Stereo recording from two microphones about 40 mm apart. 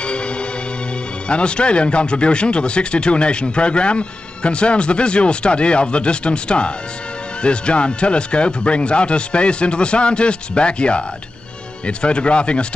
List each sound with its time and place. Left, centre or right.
0.0 s music: left
1.3 s speech: left